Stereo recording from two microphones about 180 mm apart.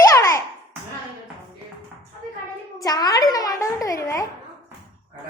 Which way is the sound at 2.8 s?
20° left (ahead or behind).